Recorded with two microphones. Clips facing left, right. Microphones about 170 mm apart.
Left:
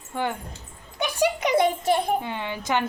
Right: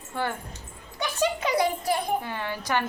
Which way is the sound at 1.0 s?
15° left (ahead or behind).